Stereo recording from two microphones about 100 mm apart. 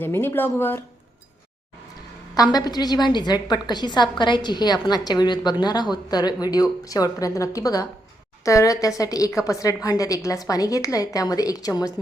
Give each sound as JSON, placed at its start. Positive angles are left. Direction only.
{"t": 0.0, "sound": "a woman's voice", "side_deg": 20}
{"t": 2.3, "sound": "a woman's voice", "side_deg": 40}